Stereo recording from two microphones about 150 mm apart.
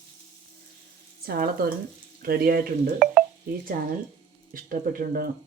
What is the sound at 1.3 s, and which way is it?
Speech, 80° right.